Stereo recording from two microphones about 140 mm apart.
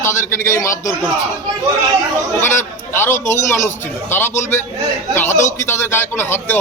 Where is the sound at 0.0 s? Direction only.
20° left (ahead or behind).